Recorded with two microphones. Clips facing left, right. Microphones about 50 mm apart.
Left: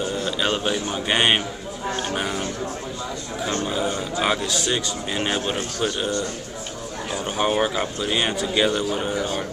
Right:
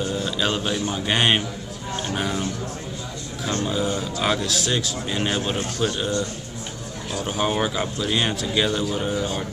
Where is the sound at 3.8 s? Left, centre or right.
Centre.